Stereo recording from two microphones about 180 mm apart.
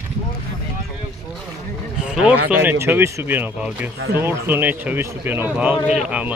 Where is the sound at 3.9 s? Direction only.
65° right (ahead or behind).